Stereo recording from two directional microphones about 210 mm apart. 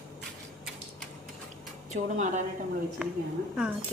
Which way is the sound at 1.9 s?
35° right (ahead or behind).